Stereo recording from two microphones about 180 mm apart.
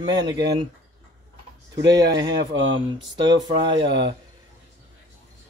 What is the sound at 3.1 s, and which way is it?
Speech, 25° right (ahead or behind).